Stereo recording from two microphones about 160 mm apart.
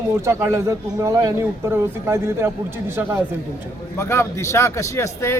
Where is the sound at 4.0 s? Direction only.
15° left (ahead or behind).